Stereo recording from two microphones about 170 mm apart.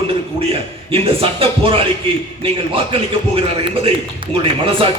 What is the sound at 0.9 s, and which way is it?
A man's voice, 35° right (ahead or behind).